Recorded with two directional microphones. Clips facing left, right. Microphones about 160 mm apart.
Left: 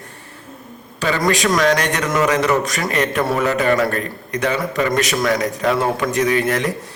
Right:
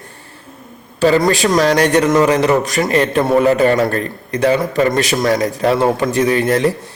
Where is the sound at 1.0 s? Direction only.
35° right (ahead or behind).